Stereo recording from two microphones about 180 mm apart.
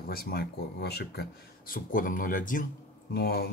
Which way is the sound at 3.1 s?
60° left (ahead or behind).